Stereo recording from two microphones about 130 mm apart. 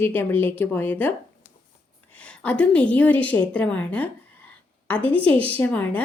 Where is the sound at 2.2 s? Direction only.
10° left (ahead or behind).